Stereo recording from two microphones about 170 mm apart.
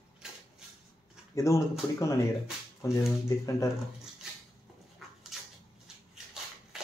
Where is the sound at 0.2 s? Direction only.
5° right (ahead or behind).